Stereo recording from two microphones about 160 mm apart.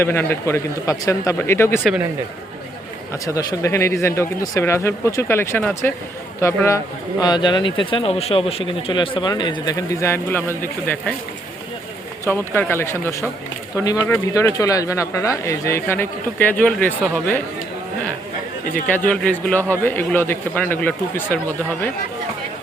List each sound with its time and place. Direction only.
0.0 s speech: 15° left (ahead or behind)
3.1 s speech: 20° left (ahead or behind)
12.2 s speech: 15° left (ahead or behind)
18.9 s speech: 10° left (ahead or behind)